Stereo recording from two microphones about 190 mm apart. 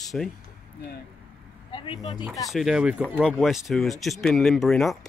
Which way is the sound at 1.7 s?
25° left (ahead or behind).